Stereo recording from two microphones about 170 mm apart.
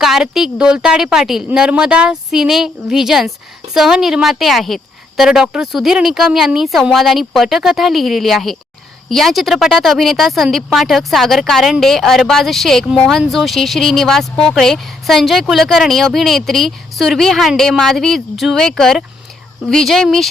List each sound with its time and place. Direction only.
0.0 s speech: centre (ahead or behind)